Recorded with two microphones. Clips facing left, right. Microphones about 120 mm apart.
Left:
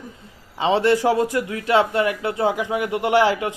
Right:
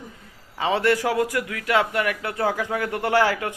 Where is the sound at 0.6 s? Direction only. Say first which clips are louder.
Left 4 dB; 25° left (ahead or behind).